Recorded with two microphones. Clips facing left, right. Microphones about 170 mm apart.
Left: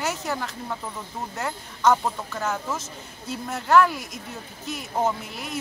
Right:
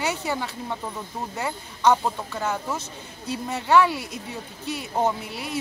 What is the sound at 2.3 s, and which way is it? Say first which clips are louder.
Speech: right 1 dB; centre (ahead or behind).